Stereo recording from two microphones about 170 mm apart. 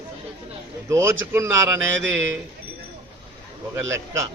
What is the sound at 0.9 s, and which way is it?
Speech, 15° right (ahead or behind).